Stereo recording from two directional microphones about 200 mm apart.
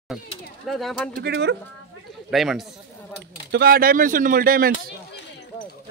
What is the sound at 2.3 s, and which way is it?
Speech, centre (ahead or behind).